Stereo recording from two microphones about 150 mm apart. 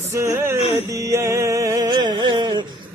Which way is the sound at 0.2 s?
15° right (ahead or behind).